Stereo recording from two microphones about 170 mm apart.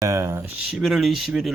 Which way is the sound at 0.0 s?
15° right (ahead or behind).